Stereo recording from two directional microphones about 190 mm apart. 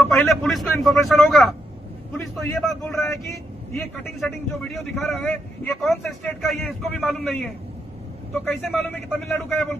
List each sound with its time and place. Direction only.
0.1 s a man's voice: centre (ahead or behind)
8.5 s a man's voice: 10° left (ahead or behind)